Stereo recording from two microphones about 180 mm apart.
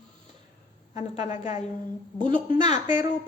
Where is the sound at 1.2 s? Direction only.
40° left (ahead or behind).